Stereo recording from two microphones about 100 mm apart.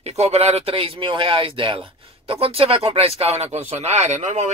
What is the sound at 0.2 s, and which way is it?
Speech, 90° right.